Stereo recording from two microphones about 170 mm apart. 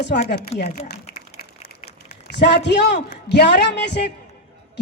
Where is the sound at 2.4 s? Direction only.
85° left.